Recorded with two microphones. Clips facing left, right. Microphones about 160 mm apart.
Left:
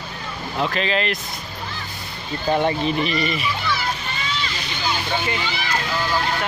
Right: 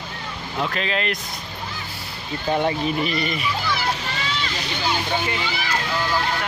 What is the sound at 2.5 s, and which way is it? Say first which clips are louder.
Speech: left 1 dB; centre (ahead or behind).